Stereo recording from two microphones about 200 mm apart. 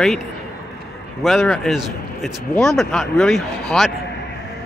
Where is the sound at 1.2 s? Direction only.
Centre (ahead or behind).